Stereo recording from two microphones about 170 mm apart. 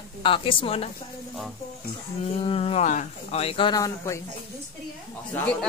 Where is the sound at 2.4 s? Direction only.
35° left (ahead or behind); by 4.2 s 20° left (ahead or behind).